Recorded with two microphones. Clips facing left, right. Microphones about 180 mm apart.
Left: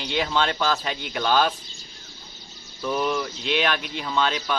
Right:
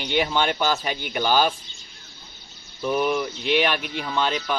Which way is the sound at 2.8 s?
10° right (ahead or behind).